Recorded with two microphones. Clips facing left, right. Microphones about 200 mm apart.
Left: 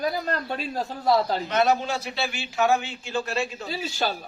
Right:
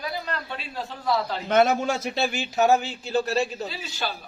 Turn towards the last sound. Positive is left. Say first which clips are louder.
# left 4 dB
turn(degrees=40)  # may be behind; listen again after turning